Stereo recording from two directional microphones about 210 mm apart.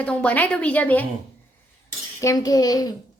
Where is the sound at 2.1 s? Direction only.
15° left (ahead or behind).